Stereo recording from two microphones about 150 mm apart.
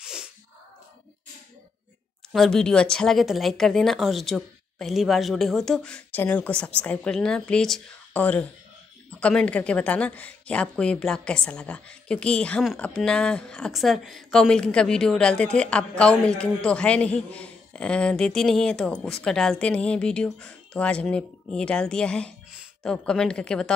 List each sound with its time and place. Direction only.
0.0 s sneeze: 5° right (ahead or behind)
2.3 s a woman's voice: 5° left (ahead or behind)